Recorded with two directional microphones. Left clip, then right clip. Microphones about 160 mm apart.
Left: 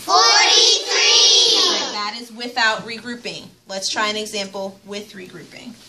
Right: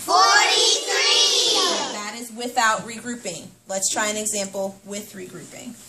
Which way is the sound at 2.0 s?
10° right (ahead or behind).